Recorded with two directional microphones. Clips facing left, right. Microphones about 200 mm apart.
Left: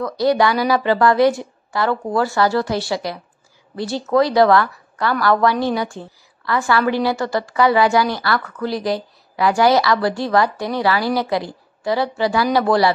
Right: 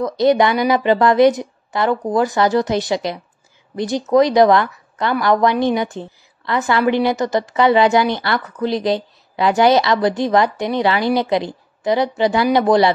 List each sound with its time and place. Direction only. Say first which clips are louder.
0.0 s a woman's voice: right 2 dB; 20° right (ahead or behind)